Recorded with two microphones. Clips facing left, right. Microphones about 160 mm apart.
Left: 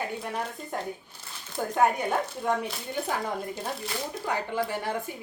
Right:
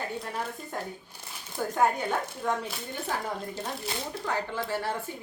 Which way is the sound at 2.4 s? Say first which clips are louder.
Left 2 dB; 15° left (ahead or behind).